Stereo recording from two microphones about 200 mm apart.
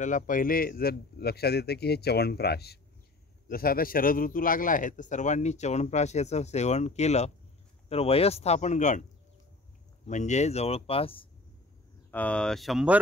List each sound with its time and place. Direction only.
0.0 s a man's voice: 40° left (ahead or behind)
10.0 s a man's voice: 35° left (ahead or behind)
12.1 s speech: 5° left (ahead or behind)